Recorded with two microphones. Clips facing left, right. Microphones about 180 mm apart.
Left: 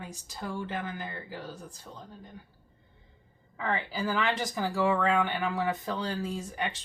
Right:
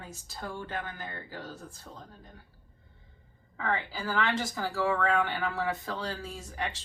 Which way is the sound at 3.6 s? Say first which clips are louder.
Left 1 dB; 15° left (ahead or behind).